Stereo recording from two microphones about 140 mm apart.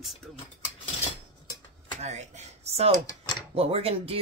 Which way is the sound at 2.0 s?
55° right (ahead or behind).